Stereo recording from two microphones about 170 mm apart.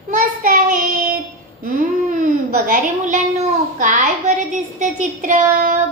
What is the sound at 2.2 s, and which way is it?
A woman's voice, 50° right (ahead or behind).